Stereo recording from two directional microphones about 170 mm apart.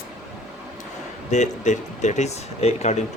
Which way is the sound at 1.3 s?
45° left (ahead or behind).